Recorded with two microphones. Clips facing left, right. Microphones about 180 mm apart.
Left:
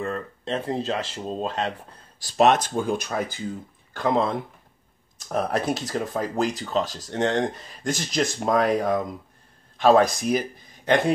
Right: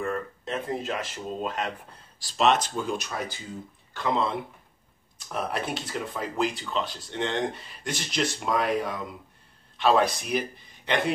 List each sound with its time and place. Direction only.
0.0 s speech: 25° left (ahead or behind)
2.2 s speech: 50° left (ahead or behind)